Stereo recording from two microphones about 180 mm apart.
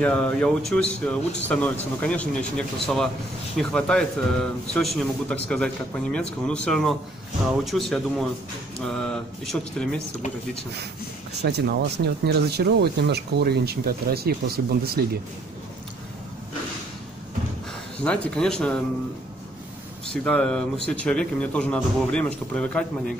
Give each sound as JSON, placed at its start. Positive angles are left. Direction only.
{"t": 0.0, "sound": "a man's voice", "side_deg": 5}
{"t": 11.4, "sound": "speech", "side_deg": -65}
{"t": 18.0, "sound": "speech", "side_deg": 5}
{"t": 20.1, "sound": "a man's voice", "side_deg": 5}